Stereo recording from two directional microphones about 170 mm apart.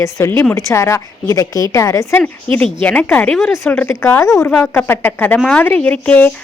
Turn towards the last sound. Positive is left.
turn(degrees=10)  # may be behind; listen again after turning